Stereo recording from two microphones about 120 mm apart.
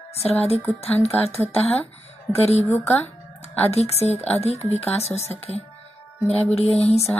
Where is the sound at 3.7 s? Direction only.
60° left (ahead or behind).